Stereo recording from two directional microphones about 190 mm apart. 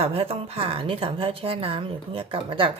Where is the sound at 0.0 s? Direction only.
30° right (ahead or behind).